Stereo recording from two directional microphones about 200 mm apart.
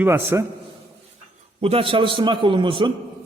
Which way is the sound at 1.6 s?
25° right (ahead or behind).